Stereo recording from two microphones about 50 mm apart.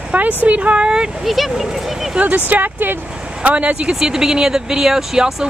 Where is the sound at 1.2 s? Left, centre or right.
Centre.